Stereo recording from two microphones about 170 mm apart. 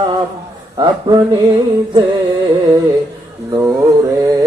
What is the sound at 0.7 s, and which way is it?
Speech, 25° right (ahead or behind).